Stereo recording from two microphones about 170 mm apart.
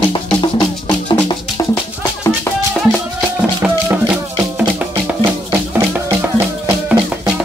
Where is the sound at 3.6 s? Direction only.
5° right (ahead or behind).